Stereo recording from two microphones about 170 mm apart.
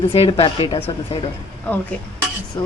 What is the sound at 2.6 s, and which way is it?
Speech, 20° left (ahead or behind).